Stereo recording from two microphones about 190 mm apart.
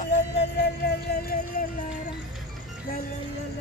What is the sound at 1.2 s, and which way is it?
Music, 50° left (ahead or behind).